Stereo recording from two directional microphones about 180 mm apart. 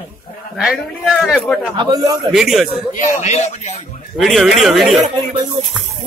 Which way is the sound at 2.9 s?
40° left (ahead or behind).